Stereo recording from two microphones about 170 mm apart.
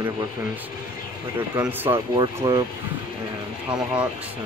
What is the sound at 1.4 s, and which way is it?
Speech, 10° right (ahead or behind).